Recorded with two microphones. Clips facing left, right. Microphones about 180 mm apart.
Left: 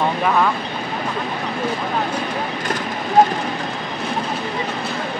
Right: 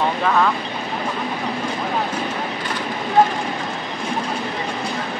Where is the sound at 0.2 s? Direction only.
5° left (ahead or behind).